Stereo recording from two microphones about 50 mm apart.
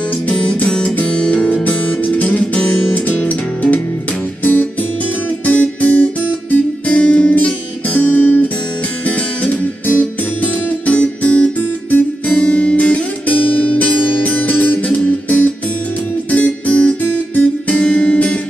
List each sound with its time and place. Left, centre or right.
0.3 s music: left
12.3 s guitar: left
15.0 s music: left